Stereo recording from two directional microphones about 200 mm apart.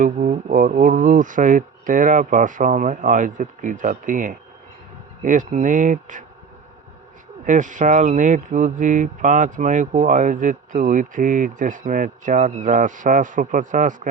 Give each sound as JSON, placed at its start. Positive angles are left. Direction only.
{"t": 0.0, "sound": "speech", "side_deg": -40}
{"t": 7.4, "sound": "speech", "side_deg": -40}